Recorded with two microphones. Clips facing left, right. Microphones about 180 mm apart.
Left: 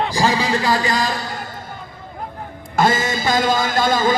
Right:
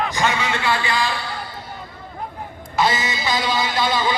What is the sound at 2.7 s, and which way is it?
Speech, 50° left (ahead or behind).